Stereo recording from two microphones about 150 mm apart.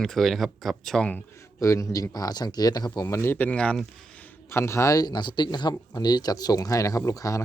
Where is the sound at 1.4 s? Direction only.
20° left (ahead or behind).